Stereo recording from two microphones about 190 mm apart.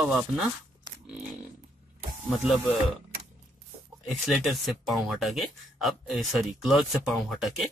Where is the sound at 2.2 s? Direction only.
Centre (ahead or behind).